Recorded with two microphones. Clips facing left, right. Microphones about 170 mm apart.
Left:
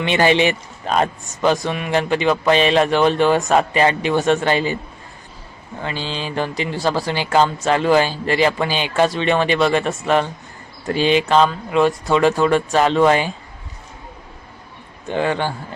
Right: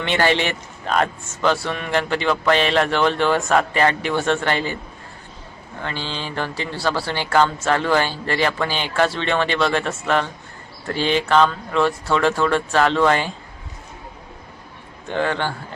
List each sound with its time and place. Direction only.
0.0 s a man's voice: 15° left (ahead or behind)
5.8 s a man's voice: 15° left (ahead or behind)
15.0 s a man's voice: 15° left (ahead or behind)